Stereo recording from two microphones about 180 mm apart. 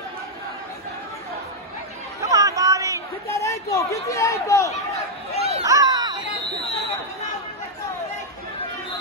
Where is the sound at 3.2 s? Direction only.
15° left (ahead or behind).